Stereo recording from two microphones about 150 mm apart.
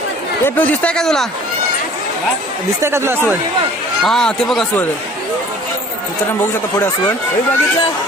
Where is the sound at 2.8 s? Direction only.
15° right (ahead or behind).